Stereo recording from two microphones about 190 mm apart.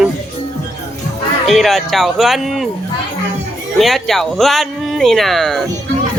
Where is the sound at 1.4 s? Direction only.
Centre (ahead or behind).